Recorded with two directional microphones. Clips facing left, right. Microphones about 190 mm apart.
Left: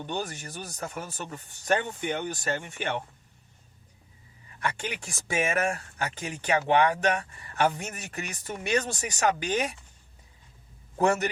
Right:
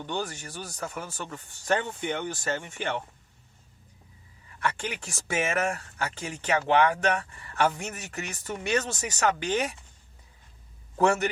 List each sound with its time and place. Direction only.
0.0 s speech: 15° left (ahead or behind)
4.6 s speech: 15° left (ahead or behind)